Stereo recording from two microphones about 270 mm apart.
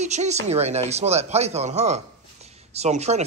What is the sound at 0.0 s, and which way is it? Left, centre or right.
Speech, right.